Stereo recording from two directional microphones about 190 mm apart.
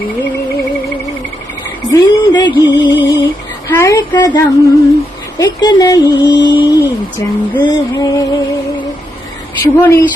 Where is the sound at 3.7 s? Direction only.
15° left (ahead or behind).